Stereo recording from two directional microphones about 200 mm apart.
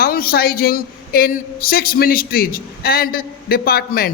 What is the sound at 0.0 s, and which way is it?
A man's voice, 50° left (ahead or behind).